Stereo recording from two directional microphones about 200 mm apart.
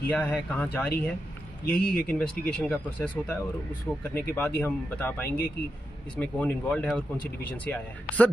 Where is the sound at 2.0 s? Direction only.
5° left (ahead or behind).